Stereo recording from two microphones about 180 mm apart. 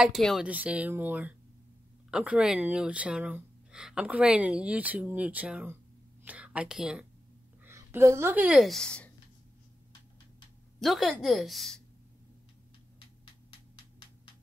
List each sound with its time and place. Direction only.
0.0 s a woman's voice: centre (ahead or behind)
10.8 s a woman's voice: centre (ahead or behind)